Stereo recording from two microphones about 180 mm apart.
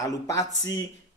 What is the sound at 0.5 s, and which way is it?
Speech, 90° left.